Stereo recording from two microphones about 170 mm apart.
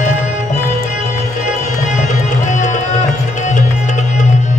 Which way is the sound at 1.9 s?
45° left (ahead or behind).